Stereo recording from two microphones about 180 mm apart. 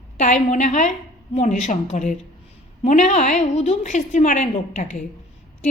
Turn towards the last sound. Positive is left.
turn(degrees=40)  # may be behind; listen again after turning